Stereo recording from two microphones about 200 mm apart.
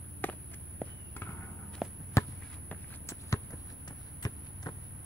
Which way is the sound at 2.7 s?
15° left (ahead or behind).